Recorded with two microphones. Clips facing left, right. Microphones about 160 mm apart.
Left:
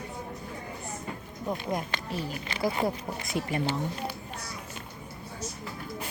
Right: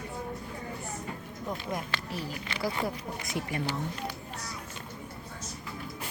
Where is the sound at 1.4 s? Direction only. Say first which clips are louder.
Left 4 dB; 20° left (ahead or behind).